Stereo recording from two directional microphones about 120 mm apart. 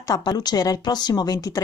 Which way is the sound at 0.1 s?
35° left (ahead or behind).